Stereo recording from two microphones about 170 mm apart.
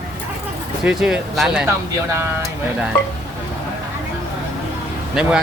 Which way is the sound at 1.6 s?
15° right (ahead or behind).